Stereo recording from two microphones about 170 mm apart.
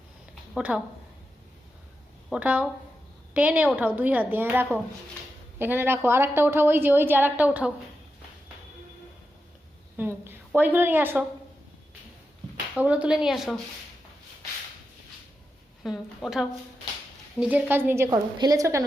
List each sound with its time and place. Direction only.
0.5 s a woman's voice: 5° right (ahead or behind)
2.3 s a woman's voice: 5° right (ahead or behind)
10.0 s a woman's voice: 10° right (ahead or behind)
12.7 s speech: 10° right (ahead or behind)
15.8 s a woman's voice: centre (ahead or behind); by 18.8 s 20° right (ahead or behind)